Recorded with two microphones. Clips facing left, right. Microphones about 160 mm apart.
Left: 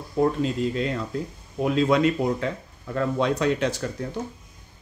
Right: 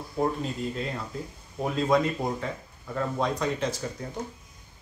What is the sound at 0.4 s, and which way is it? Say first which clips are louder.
Speech: left 7 dB; 90° left.